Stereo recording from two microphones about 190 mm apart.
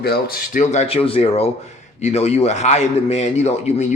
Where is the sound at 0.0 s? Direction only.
55° left (ahead or behind).